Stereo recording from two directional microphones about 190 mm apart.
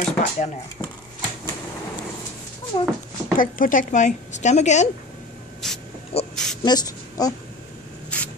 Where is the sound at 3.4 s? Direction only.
45° left (ahead or behind).